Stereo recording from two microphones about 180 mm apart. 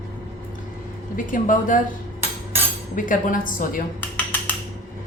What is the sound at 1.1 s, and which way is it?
Speech, 45° left (ahead or behind).